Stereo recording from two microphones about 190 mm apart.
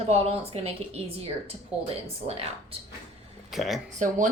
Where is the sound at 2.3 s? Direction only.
30° right (ahead or behind).